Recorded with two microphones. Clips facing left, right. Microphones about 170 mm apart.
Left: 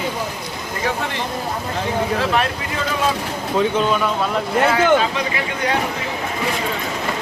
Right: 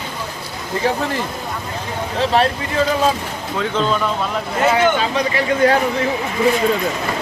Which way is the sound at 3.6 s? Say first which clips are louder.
Left 1 dB; 10° left (ahead or behind).